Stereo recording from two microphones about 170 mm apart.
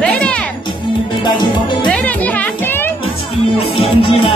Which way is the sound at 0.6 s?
30° left (ahead or behind).